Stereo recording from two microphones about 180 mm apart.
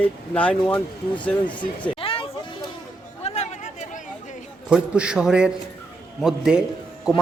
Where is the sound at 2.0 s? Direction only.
30° left (ahead or behind).